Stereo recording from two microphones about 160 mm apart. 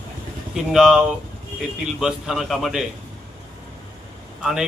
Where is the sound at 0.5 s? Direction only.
5° right (ahead or behind).